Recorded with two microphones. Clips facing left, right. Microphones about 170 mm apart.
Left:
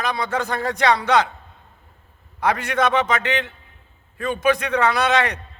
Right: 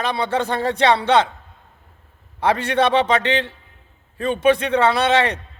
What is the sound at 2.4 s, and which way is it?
A man's voice, 30° right (ahead or behind).